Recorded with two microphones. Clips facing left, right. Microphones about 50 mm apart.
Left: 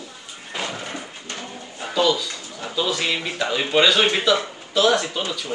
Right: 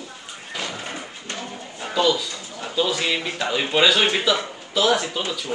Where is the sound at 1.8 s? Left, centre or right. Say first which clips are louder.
Even; centre.